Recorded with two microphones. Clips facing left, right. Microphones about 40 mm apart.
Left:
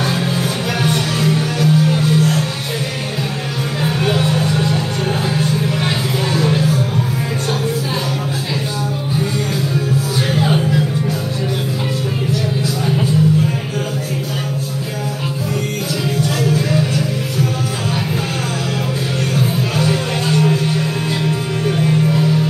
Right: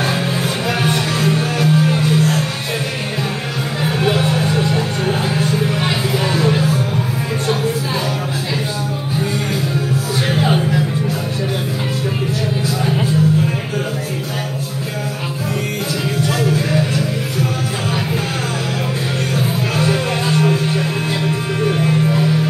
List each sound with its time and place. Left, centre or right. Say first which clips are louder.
1.3 s music: left 1 dB; right
3.8 s music: right 1 dB; centre
4.2 s music: even; right
6.3 s music: even; centre
19.8 s music: right 1 dB; centre
21.7 s music: left 3 dB; centre